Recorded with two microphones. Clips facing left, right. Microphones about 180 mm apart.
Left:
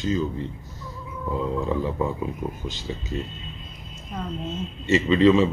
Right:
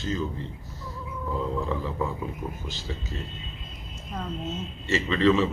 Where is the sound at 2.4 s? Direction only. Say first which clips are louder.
Left 4 dB; 20° left (ahead or behind).